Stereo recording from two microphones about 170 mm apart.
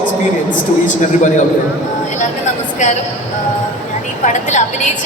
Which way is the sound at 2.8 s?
45° left (ahead or behind).